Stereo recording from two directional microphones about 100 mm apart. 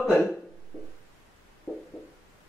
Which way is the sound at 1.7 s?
10° left (ahead or behind).